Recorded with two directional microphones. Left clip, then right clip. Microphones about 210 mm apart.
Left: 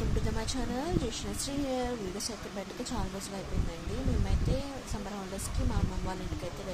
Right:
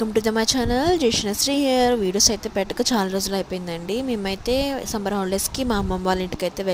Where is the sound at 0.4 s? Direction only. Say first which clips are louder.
Right 15 dB; 45° right (ahead or behind).